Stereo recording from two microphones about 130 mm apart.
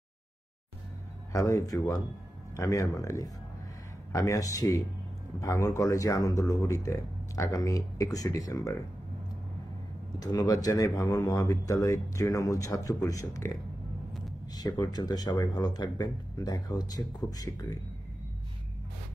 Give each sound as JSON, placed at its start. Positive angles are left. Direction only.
{"t": 1.3, "sound": "speech", "side_deg": 25}
{"t": 10.1, "sound": "speech", "side_deg": 30}
{"t": 14.5, "sound": "speech", "side_deg": 30}